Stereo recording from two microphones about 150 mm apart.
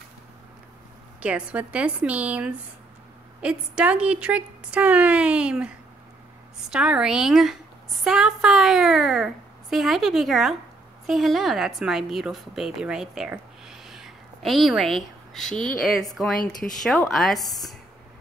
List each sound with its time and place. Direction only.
1.2 s a woman's voice: 10° right (ahead or behind)
6.7 s a woman's voice: 5° right (ahead or behind)